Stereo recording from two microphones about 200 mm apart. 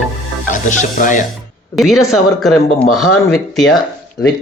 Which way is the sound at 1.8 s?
Centre (ahead or behind).